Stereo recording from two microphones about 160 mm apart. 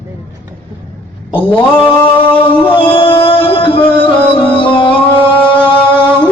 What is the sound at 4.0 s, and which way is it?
Music, 10° left (ahead or behind).